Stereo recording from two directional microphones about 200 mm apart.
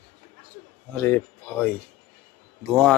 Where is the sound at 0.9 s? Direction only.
10° left (ahead or behind).